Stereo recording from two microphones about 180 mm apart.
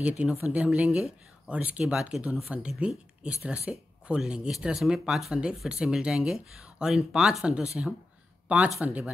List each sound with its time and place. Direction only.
0.0 s speech: 10° right (ahead or behind)